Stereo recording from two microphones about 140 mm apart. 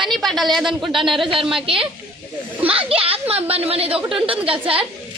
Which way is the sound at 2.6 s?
45° right (ahead or behind).